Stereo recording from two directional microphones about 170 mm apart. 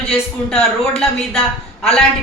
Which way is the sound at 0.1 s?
Centre (ahead or behind).